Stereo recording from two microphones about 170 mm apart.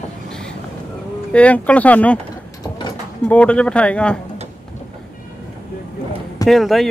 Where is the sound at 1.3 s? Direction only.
10° left (ahead or behind).